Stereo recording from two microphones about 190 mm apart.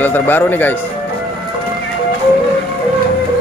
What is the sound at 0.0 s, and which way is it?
Speech, 10° left (ahead or behind).